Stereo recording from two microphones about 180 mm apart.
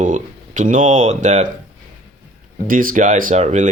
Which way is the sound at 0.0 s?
45° right (ahead or behind).